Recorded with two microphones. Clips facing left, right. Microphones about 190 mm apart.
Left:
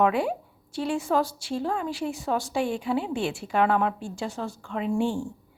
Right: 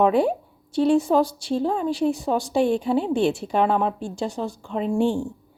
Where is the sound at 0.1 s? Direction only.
25° right (ahead or behind).